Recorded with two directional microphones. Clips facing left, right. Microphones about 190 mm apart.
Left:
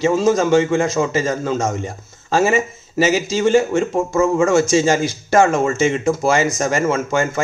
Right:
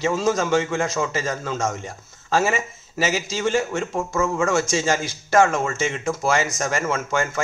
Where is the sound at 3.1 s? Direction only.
30° left (ahead or behind).